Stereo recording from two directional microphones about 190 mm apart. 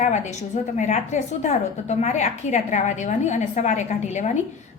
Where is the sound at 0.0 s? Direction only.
40° left (ahead or behind).